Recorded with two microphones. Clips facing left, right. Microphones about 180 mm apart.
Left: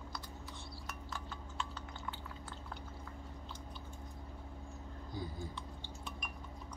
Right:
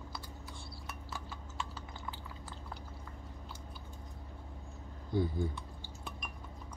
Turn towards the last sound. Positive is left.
turn(degrees=-60)  # may be behind; listen again after turning